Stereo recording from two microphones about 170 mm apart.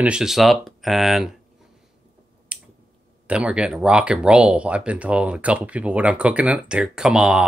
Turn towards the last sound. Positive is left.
turn(degrees=-5)  # may be behind; listen again after turning